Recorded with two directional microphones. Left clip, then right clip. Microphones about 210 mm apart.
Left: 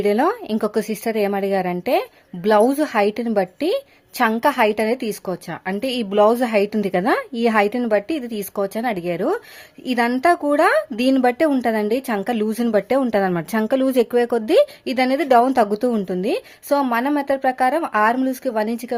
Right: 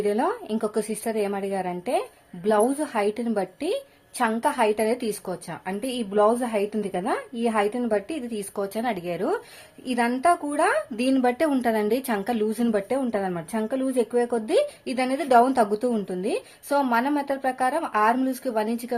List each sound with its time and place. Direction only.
0.0 s speech: 40° left (ahead or behind)